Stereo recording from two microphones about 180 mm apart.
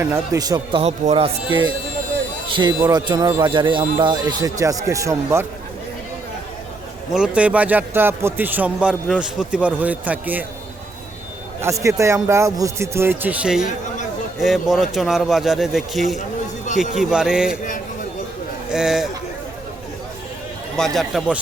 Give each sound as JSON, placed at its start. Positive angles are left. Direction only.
{"t": 0.0, "sound": "speech", "side_deg": -15}
{"t": 7.1, "sound": "a man's voice", "side_deg": -5}
{"t": 11.6, "sound": "a man's voice", "side_deg": -15}
{"t": 18.7, "sound": "speech", "side_deg": -5}
{"t": 20.7, "sound": "speech", "side_deg": 0}